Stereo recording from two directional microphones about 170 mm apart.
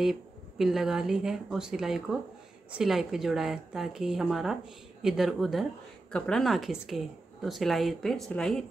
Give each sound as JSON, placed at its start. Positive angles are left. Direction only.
{"t": 0.0, "sound": "a woman's voice", "side_deg": 0}